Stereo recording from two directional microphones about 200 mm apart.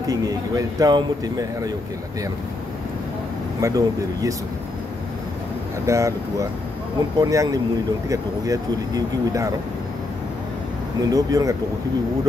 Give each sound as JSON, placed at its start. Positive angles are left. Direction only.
{"t": 0.0, "sound": "speech", "side_deg": -20}
{"t": 3.6, "sound": "speech", "side_deg": -15}
{"t": 5.9, "sound": "speech", "side_deg": -15}
{"t": 11.0, "sound": "speech", "side_deg": -20}